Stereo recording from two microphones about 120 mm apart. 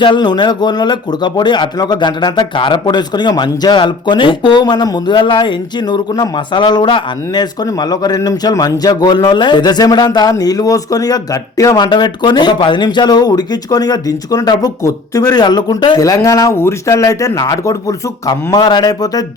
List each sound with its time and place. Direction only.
0.0 s speech: 40° left (ahead or behind)